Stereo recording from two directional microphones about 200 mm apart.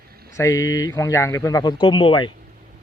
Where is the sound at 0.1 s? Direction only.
50° right (ahead or behind).